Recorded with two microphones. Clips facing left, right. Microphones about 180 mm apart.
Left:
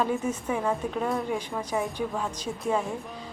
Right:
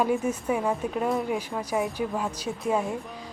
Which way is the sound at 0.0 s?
10° right (ahead or behind).